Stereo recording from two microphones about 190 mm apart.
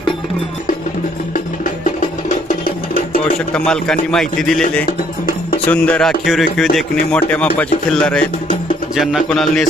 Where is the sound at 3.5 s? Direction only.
5° left (ahead or behind).